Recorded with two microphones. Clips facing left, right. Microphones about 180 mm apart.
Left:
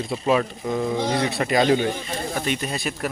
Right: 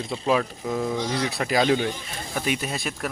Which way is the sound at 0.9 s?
60° left (ahead or behind).